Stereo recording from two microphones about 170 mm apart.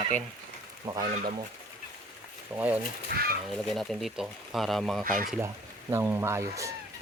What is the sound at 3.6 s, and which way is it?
Speech, centre (ahead or behind).